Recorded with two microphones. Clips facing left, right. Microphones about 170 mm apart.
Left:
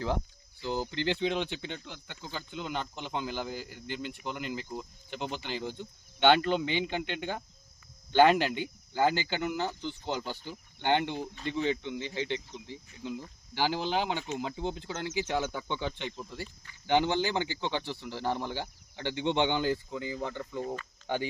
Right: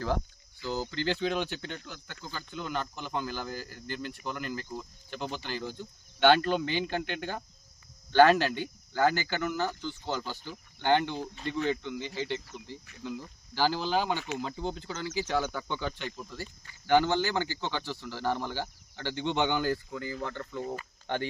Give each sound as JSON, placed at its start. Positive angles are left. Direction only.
{"t": 0.6, "sound": "speech", "side_deg": 20}